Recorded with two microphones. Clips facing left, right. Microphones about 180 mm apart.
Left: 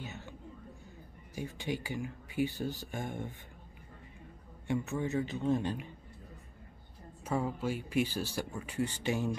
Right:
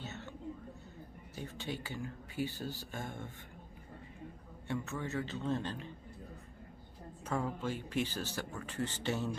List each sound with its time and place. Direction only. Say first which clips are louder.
0.0 s a sound: left 1 dB; 10° left (ahead or behind)
1.3 s speech: left 5 dB; 15° left (ahead or behind)
4.6 s speech: left 5 dB; 15° left (ahead or behind)
7.2 s speech: left 3 dB; 10° left (ahead or behind)